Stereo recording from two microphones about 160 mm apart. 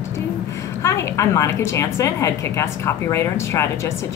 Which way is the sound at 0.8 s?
20° left (ahead or behind).